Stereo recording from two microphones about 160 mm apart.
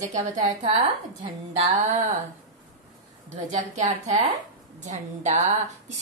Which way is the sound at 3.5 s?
50° right (ahead or behind).